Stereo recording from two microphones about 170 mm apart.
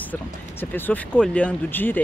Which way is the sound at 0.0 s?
10° left (ahead or behind).